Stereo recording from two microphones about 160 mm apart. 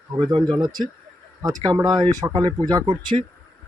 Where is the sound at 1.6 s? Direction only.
20° right (ahead or behind).